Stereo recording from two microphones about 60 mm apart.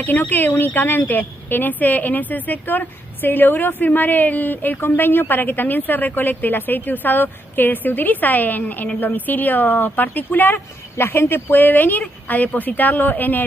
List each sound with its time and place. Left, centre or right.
0.0 s a woman's voice: left